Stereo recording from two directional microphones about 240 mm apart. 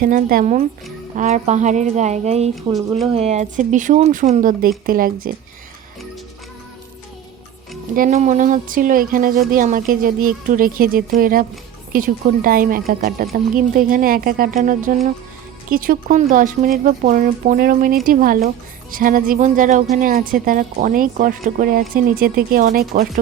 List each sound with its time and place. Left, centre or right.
0.0 s a woman's voice: right
7.9 s speech: right